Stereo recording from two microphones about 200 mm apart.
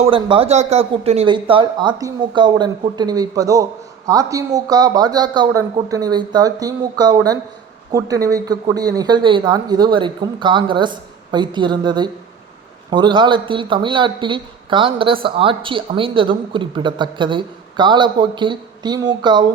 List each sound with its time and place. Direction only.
0.0 s speech: 25° right (ahead or behind)